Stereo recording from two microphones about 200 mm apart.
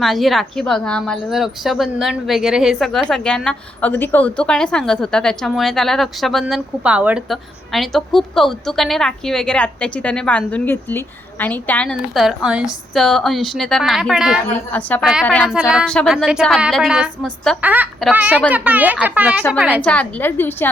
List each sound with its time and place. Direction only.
0.0 s a woman's voice: centre (ahead or behind)
14.7 s a woman's voice: 10° left (ahead or behind)
15.5 s a woman's voice: 5° right (ahead or behind)
17.6 s speech: 10° right (ahead or behind)
19.8 s a woman's voice: 5° left (ahead or behind)